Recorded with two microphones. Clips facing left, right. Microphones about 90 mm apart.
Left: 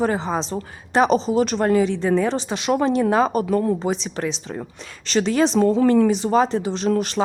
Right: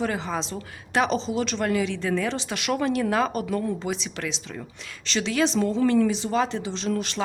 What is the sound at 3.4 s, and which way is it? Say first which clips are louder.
Speech: left 7 dB; 45° left (ahead or behind).